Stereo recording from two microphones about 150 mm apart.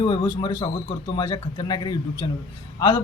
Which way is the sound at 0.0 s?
30° left (ahead or behind).